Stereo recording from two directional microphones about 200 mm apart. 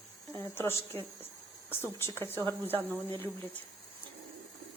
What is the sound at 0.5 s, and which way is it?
Speech, 10° left (ahead or behind).